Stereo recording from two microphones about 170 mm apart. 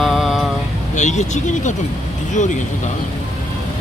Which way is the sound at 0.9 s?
45° left (ahead or behind).